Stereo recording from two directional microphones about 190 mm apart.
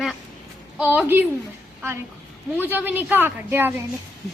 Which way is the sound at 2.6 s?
10° right (ahead or behind).